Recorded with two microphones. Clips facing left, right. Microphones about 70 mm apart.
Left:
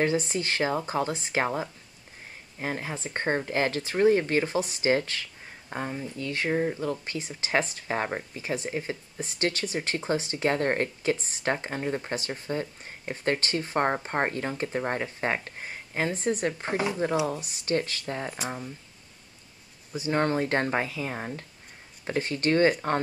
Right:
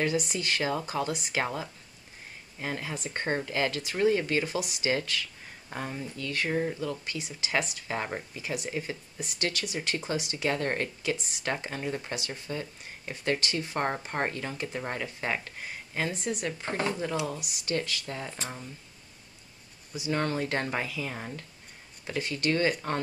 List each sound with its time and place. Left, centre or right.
0.0 s speech: left
5.7 s speech: centre
6.8 s speech: left
16.7 s speech: centre
17.3 s speech: left
20.0 s speech: left